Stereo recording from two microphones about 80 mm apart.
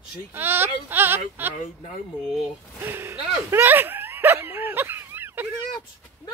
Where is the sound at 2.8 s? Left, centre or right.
Right.